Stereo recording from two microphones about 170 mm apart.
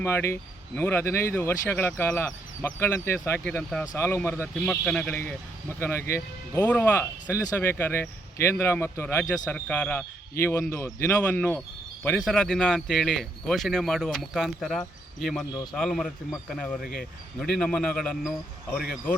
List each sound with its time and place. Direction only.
0.0 s speech: 15° left (ahead or behind)